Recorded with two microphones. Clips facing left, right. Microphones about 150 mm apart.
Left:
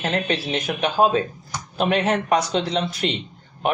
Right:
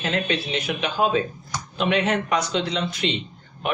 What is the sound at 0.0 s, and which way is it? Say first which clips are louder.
Speech: left 1 dB; 40° left (ahead or behind).